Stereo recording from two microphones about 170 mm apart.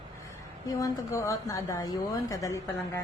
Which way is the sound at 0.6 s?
20° left (ahead or behind).